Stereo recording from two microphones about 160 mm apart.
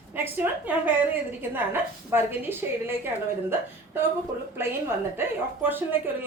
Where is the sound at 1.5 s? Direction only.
15° right (ahead or behind).